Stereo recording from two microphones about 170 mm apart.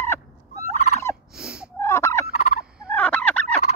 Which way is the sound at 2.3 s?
40° left (ahead or behind).